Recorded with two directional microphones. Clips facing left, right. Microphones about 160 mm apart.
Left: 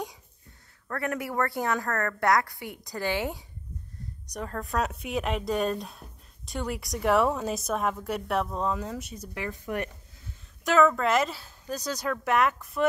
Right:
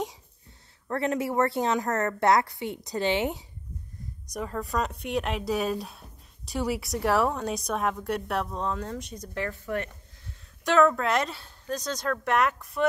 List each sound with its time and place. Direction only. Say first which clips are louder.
0.8 s a woman's voice: right 4 dB; 25° right (ahead or behind)
4.3 s speech: right 2 dB; 5° right (ahead or behind); by 9.8 s 15° left (ahead or behind)
10.6 s speech: even; centre (ahead or behind)